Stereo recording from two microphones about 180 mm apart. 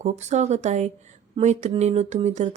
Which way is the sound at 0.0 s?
40° right (ahead or behind).